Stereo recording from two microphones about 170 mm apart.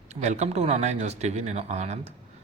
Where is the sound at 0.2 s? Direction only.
40° right (ahead or behind).